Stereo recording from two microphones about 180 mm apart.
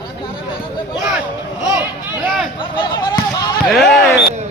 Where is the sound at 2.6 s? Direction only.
25° left (ahead or behind).